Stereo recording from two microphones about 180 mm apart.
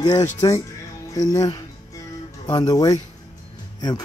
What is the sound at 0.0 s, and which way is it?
Speech, 20° left (ahead or behind).